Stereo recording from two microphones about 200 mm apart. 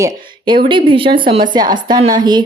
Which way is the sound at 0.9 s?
25° right (ahead or behind).